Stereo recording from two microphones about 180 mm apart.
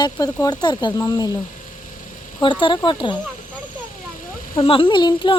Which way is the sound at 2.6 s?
25° left (ahead or behind).